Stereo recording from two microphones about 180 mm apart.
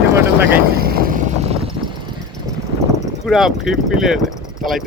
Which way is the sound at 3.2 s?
Centre (ahead or behind).